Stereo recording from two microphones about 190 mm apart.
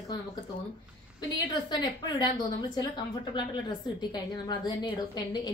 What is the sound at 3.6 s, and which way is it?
A woman's voice, 20° left (ahead or behind).